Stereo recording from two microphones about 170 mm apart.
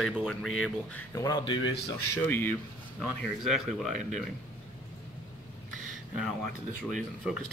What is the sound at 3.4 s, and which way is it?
Speech, centre (ahead or behind).